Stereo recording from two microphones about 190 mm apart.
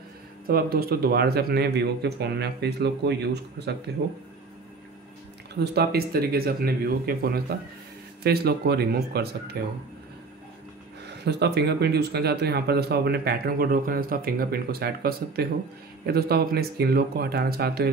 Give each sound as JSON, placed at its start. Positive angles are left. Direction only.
{"t": 0.5, "sound": "speech", "side_deg": -50}
{"t": 5.5, "sound": "speech", "side_deg": -60}
{"t": 11.2, "sound": "speech", "side_deg": -60}